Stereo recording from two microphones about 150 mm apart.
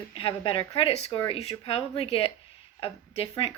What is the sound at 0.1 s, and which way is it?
Speech, 40° left (ahead or behind).